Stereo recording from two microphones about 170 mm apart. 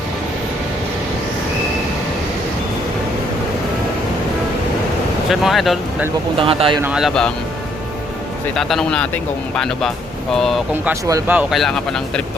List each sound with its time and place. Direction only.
5.3 s speech: centre (ahead or behind)
6.4 s speech: 30° right (ahead or behind)
6.9 s speech: centre (ahead or behind)
8.5 s speech: 5° left (ahead or behind)
11.0 s speech: 20° right (ahead or behind)
11.3 s speech: centre (ahead or behind)